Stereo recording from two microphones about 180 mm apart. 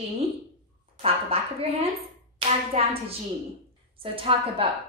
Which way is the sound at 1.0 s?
35° right (ahead or behind).